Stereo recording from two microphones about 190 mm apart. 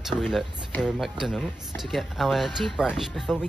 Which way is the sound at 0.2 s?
Centre (ahead or behind).